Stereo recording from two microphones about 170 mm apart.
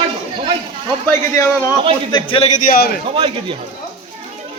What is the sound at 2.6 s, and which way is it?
Speech, 55° left (ahead or behind).